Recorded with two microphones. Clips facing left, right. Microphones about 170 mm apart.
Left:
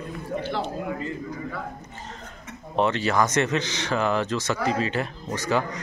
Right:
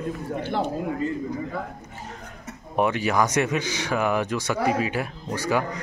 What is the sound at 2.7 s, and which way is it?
Speech, 10° right (ahead or behind).